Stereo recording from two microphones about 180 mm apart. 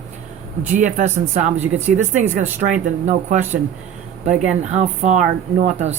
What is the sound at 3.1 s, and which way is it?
Speech, 45° right (ahead or behind).